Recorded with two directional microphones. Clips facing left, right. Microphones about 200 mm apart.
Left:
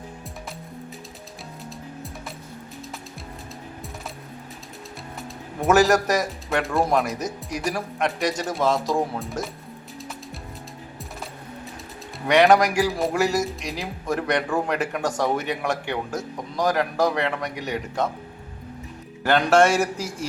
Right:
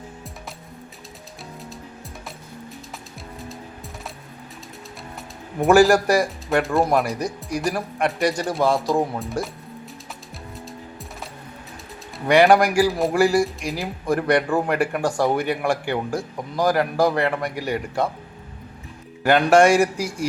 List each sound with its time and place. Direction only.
5.5 s speech: centre (ahead or behind)
12.3 s speech: centre (ahead or behind)
19.2 s a man's voice: 15° right (ahead or behind)